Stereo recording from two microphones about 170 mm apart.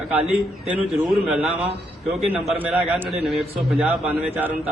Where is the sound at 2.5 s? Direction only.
5° right (ahead or behind).